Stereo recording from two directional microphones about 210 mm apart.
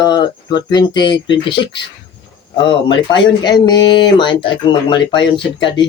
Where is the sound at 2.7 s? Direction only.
25° left (ahead or behind).